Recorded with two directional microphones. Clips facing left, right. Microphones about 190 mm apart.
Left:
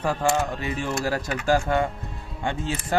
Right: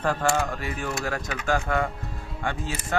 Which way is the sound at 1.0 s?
35° left (ahead or behind).